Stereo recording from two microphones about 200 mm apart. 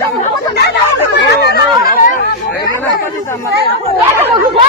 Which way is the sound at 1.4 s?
55° left (ahead or behind).